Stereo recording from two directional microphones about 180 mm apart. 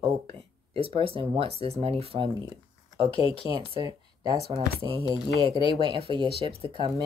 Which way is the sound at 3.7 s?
25° right (ahead or behind).